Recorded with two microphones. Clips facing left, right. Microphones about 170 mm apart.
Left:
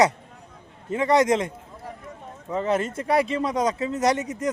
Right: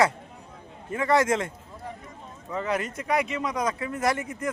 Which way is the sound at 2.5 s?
30° left (ahead or behind).